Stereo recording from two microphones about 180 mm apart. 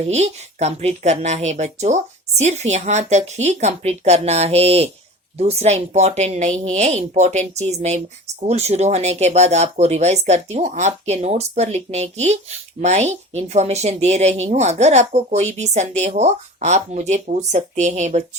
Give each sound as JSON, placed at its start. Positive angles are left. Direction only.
{"t": 0.1, "sound": "speech", "side_deg": -40}